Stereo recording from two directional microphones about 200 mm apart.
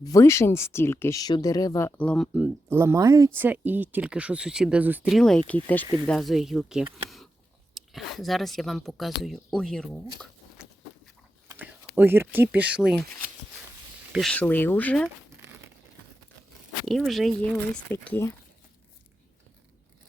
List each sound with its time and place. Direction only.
0.0 s speech: 15° left (ahead or behind)
5.8 s speech: 20° right (ahead or behind)
6.1 s speech: centre (ahead or behind)
11.4 s a sound: 10° right (ahead or behind)
11.9 s speech: 10° right (ahead or behind)
14.1 s speech: centre (ahead or behind)
15.0 s crumpling: 10° right (ahead or behind)
16.8 s speech: centre (ahead or behind)